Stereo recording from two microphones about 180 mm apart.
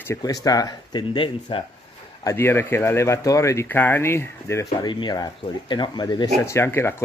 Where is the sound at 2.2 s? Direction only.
15° left (ahead or behind).